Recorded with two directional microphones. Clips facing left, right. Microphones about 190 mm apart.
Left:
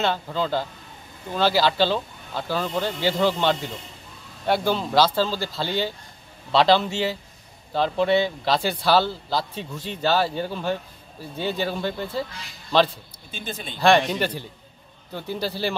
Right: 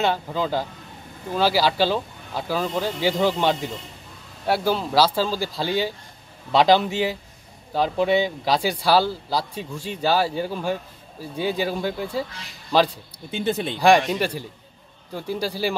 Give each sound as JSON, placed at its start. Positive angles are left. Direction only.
{"t": 0.0, "sound": "speech", "side_deg": -10}
{"t": 13.3, "sound": "speech", "side_deg": -65}
{"t": 13.7, "sound": "speech", "side_deg": -10}